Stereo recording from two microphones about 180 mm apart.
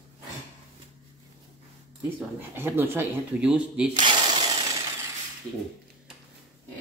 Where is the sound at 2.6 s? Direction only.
10° right (ahead or behind).